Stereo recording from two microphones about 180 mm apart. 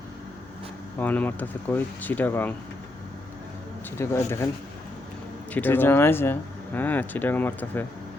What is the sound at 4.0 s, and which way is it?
Speech, 15° left (ahead or behind).